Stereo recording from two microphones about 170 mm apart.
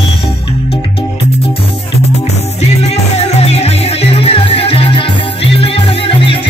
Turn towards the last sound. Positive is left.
turn(degrees=35)  # may be behind; listen again after turning